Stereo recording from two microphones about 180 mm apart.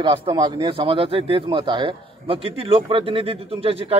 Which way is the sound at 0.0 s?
25° right (ahead or behind).